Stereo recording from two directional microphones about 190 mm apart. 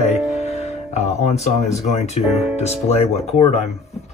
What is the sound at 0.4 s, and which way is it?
Speech, 35° left (ahead or behind).